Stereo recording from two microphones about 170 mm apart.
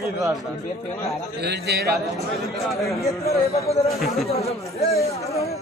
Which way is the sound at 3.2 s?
35° left (ahead or behind).